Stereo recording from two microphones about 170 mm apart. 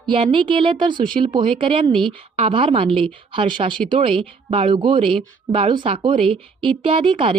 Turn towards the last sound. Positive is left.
turn(degrees=-30)  # may be behind; listen again after turning